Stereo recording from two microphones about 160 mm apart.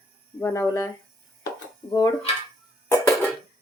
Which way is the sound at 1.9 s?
20° left (ahead or behind).